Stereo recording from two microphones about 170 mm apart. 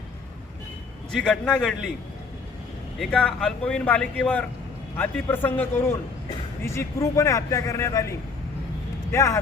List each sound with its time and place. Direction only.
1.1 s speech: 5° left (ahead or behind)
3.0 s speech: 5° left (ahead or behind)
9.1 s speech: 20° left (ahead or behind)